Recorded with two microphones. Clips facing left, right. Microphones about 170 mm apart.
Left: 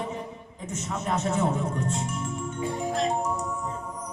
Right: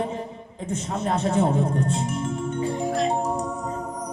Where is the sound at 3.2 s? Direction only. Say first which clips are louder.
Right 3 dB; 35° right (ahead or behind).